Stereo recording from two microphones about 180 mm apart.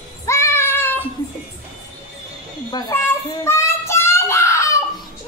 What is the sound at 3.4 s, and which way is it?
Children playing, 15° left (ahead or behind).